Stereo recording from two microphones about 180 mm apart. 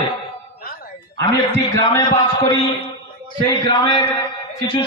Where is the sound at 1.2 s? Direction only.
20° left (ahead or behind).